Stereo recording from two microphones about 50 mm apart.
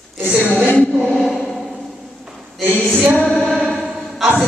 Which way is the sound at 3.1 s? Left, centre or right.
Centre.